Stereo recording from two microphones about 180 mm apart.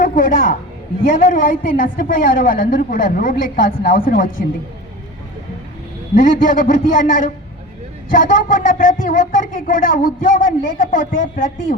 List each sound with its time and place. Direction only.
0.0 s a woman's voice: 50° left (ahead or behind)
6.1 s speech: 50° left (ahead or behind)